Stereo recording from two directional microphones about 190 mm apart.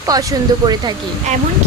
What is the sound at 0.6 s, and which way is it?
Speech, 20° right (ahead or behind).